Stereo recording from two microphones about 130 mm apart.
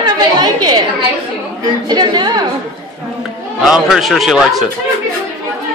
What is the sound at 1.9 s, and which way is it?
Speech, 35° right (ahead or behind).